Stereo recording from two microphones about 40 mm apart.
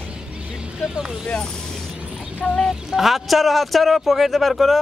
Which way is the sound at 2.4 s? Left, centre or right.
Left.